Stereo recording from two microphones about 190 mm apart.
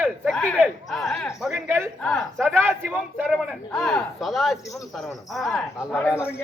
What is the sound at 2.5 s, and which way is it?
Speech, 10° right (ahead or behind).